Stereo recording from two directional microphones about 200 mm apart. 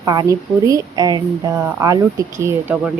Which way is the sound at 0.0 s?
20° right (ahead or behind).